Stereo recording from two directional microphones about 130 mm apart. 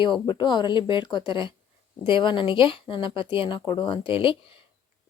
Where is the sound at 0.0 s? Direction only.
35° left (ahead or behind).